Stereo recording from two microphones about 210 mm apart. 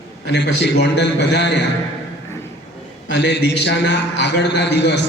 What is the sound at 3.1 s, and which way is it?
A man's voice, 55° left (ahead or behind).